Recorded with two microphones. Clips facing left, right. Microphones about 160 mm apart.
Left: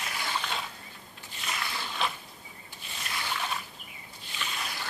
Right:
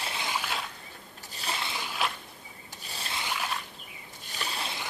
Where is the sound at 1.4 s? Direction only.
30° right (ahead or behind).